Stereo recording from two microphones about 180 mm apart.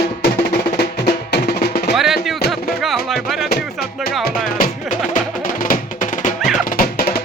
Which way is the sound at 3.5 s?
60° left (ahead or behind).